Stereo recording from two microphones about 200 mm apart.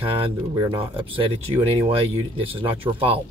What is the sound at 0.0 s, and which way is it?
Speech, 20° right (ahead or behind).